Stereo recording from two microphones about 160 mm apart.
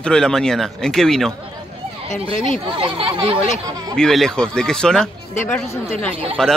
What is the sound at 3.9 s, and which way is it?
A man's voice, 5° left (ahead or behind).